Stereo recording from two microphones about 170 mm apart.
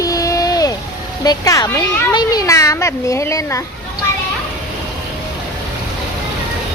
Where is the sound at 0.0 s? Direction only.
20° left (ahead or behind).